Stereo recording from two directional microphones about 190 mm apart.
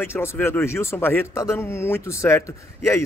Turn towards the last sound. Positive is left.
turn(degrees=15)  # may be behind; listen again after turning